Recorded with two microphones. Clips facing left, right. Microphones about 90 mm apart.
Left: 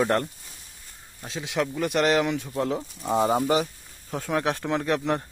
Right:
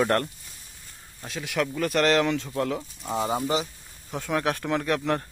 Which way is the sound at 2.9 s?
35° left (ahead or behind).